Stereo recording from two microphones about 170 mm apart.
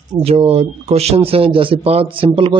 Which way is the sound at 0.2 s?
35° right (ahead or behind).